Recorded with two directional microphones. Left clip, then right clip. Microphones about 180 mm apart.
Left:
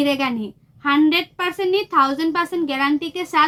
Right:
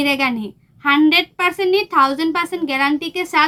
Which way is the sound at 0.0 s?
25° right (ahead or behind).